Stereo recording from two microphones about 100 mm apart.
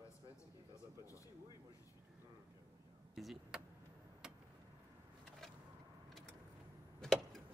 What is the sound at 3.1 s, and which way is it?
Vehicle, centre (ahead or behind).